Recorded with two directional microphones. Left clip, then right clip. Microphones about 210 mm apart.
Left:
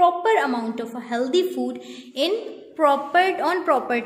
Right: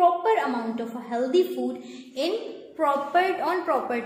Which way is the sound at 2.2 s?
40° left (ahead or behind).